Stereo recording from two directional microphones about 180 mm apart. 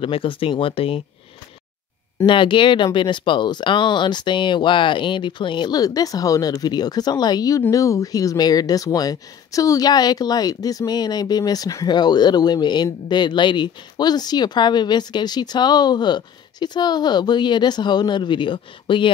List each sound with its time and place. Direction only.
0.0 s speech: 30° left (ahead or behind)
2.2 s speech: 25° left (ahead or behind)